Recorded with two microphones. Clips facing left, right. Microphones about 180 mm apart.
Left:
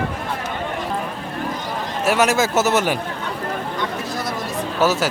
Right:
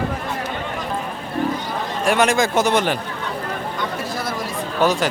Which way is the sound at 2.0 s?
5° left (ahead or behind).